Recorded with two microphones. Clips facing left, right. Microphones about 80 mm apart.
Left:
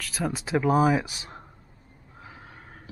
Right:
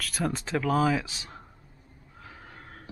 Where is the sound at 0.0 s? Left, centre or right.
Centre.